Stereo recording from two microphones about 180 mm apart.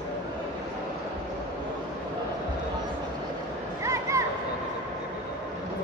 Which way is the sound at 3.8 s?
15° right (ahead or behind).